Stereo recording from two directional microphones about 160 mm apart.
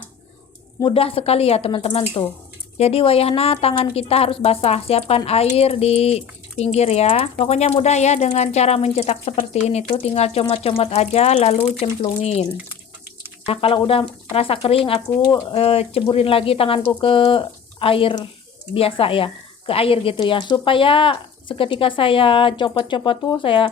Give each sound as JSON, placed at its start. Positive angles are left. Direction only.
{"t": 0.8, "sound": "a woman's voice", "side_deg": 35}